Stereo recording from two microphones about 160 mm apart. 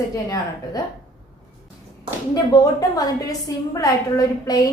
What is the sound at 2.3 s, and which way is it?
A woman's voice, 25° left (ahead or behind).